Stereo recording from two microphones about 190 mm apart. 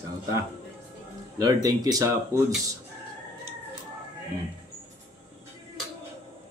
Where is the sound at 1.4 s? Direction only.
20° right (ahead or behind).